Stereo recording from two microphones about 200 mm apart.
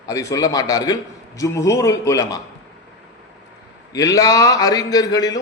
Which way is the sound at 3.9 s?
15° left (ahead or behind).